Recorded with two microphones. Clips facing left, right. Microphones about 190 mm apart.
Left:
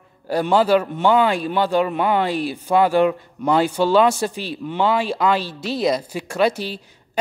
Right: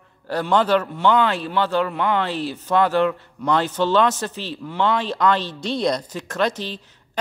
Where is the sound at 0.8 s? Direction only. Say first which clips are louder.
Left 2 dB; 20° left (ahead or behind).